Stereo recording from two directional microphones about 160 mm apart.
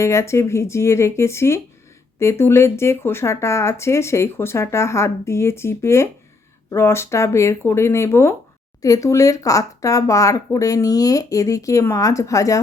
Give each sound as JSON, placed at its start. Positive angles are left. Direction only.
{"t": 0.0, "sound": "speech", "side_deg": 15}